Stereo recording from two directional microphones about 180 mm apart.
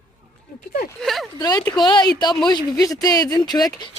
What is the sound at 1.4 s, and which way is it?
Speech, 20° left (ahead or behind).